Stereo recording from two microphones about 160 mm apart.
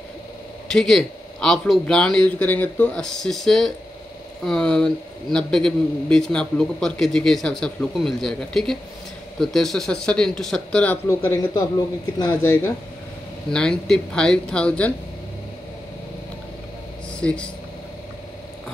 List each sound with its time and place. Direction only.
0.7 s a man's voice: 5° left (ahead or behind)
13.5 s a man's voice: 5° left (ahead or behind)
17.2 s speech: 5° left (ahead or behind)